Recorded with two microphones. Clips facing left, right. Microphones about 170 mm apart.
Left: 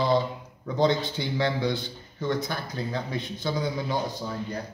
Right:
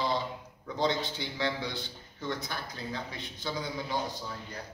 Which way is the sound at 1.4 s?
50° left (ahead or behind).